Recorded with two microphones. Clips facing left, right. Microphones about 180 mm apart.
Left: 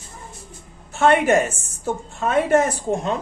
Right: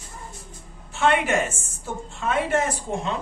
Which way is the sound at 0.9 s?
40° left (ahead or behind).